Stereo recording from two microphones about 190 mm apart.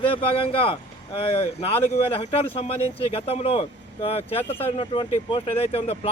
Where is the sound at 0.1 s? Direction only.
30° left (ahead or behind).